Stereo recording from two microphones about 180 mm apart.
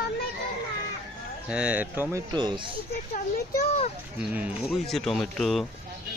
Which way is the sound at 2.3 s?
25° right (ahead or behind).